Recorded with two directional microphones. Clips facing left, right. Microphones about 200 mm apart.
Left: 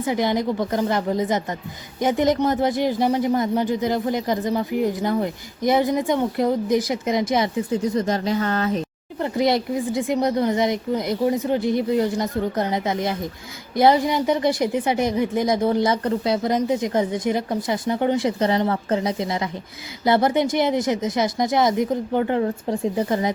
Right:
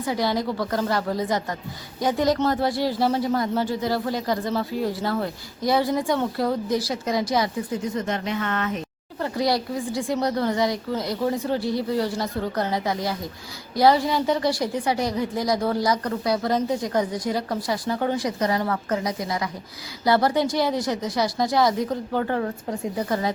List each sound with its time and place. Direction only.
0.0 s speech: 20° left (ahead or behind)
7.9 s speech: 35° left (ahead or behind)
9.2 s speech: 20° left (ahead or behind)